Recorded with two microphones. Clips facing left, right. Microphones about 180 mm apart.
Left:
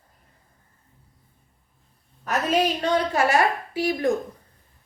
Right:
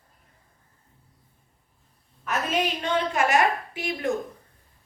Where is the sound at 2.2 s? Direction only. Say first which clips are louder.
Left 4 dB; 40° left (ahead or behind).